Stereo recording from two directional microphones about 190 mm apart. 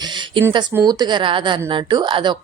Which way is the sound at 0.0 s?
25° right (ahead or behind).